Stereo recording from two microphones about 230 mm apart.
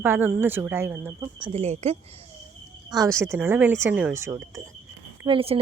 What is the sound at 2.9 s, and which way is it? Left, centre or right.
Speech, centre.